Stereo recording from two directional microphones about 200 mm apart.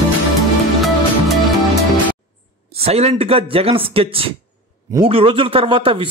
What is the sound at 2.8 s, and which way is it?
A man's voice, 30° right (ahead or behind).